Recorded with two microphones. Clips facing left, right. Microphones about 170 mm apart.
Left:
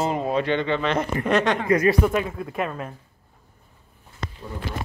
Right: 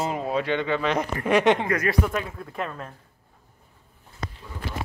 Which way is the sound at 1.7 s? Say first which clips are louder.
Left 5 dB; 20° left (ahead or behind).